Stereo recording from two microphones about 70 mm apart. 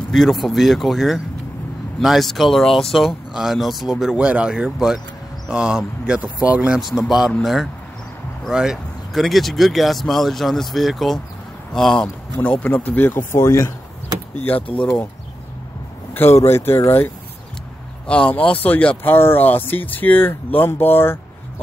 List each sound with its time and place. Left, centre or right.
0.1 s speech: centre
4.2 s speech: centre
6.8 s speech: centre
8.5 s speech: centre
12.4 s speech: centre
13.4 s speech: left
14.3 s speech: left
16.3 s speech: left
18.0 s speech: centre; by 21.2 s left